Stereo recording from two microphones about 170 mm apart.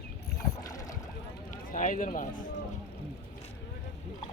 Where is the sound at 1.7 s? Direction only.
50° left (ahead or behind).